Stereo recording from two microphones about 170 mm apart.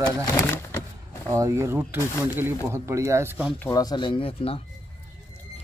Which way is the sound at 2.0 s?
15° left (ahead or behind).